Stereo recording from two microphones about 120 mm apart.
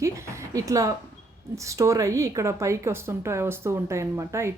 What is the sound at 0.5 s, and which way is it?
Speech, 30° right (ahead or behind).